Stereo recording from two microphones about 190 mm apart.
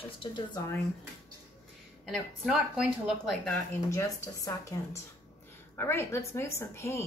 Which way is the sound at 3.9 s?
15° left (ahead or behind).